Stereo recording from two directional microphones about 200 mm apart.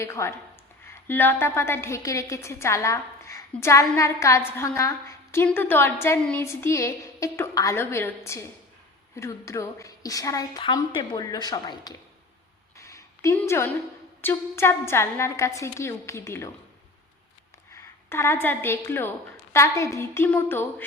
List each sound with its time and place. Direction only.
0.0 s a woman's voice: 15° left (ahead or behind)
12.7 s a sound: 15° left (ahead or behind)
14.2 s a woman's voice: 10° left (ahead or behind)
18.1 s a woman's voice: 10° left (ahead or behind)